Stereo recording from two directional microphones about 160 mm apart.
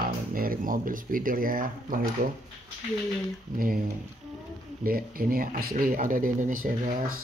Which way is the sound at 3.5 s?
60° right (ahead or behind).